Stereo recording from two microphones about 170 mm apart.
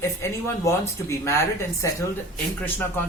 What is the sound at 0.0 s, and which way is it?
Speech, 15° left (ahead or behind).